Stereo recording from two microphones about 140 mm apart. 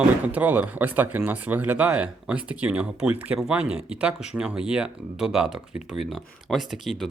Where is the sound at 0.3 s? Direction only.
10° right (ahead or behind).